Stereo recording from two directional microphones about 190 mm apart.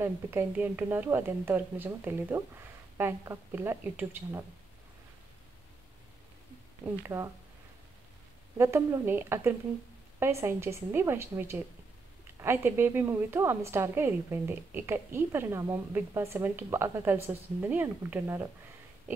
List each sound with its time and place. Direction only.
0.0 s a woman's voice: 10° right (ahead or behind)
7.0 s a woman's voice: 15° right (ahead or behind)
8.5 s a woman's voice: 15° right (ahead or behind)